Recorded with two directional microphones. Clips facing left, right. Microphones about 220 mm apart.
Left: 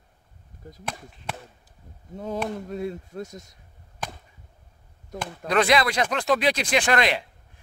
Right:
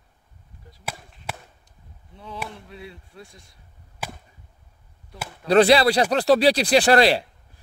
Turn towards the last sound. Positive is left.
turn(degrees=-35)  # may be behind; listen again after turning